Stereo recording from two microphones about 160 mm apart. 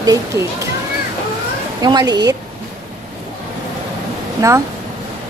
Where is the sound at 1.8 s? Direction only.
25° right (ahead or behind).